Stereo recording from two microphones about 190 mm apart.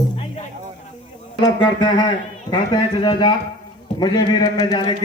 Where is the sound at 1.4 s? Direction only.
20° left (ahead or behind).